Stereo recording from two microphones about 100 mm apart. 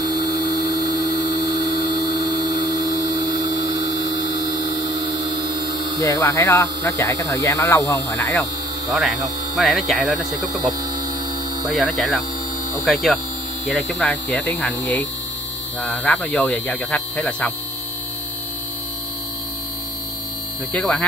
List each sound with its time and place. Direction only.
0.6 s a sound: 40° right (ahead or behind)
5.9 s speech: 35° left (ahead or behind)
9.6 s speech: centre (ahead or behind)
11.7 s speech: centre (ahead or behind); by 17.5 s 15° left (ahead or behind)
20.7 s speech: 10° left (ahead or behind)